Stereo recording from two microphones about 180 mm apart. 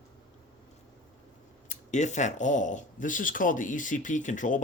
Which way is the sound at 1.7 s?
40° left (ahead or behind).